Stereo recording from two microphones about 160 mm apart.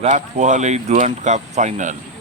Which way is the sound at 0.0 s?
50° right (ahead or behind).